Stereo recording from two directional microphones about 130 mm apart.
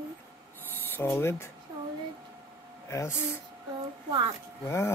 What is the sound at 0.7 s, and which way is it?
Speech, 15° left (ahead or behind).